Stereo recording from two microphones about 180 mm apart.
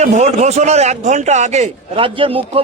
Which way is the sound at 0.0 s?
40° right (ahead or behind).